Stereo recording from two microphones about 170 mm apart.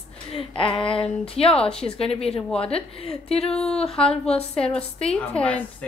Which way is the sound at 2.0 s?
35° left (ahead or behind).